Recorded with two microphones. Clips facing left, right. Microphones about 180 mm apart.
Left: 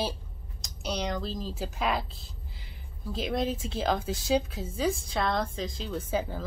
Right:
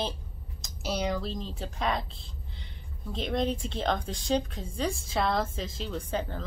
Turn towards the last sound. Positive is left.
turn(degrees=5)  # may be behind; listen again after turning